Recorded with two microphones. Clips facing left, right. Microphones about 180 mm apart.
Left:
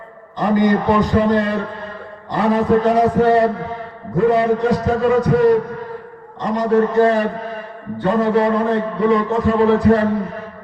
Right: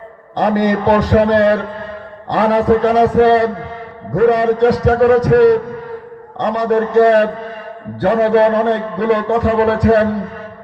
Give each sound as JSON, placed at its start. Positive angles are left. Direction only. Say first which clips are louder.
{"t": 0.3, "sound": "a man's voice", "louder": "right 1 dB", "side_deg": -70}